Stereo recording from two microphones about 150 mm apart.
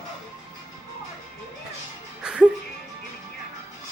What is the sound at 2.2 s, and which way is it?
Music, 5° right (ahead or behind).